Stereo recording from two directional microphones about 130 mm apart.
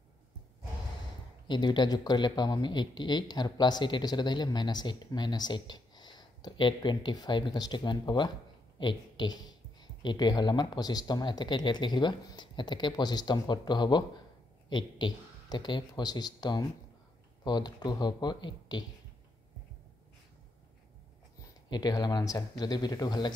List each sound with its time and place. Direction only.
1.5 s speech: 35° left (ahead or behind)
21.6 s speech: 30° left (ahead or behind)